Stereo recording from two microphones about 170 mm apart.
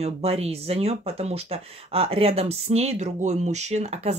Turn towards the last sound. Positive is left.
turn(degrees=-40)  # may be behind; listen again after turning